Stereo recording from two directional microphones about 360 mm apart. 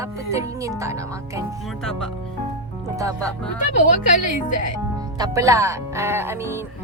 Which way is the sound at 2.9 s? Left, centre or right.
Centre.